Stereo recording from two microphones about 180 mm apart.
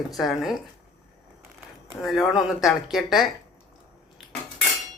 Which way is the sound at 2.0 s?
Centre (ahead or behind).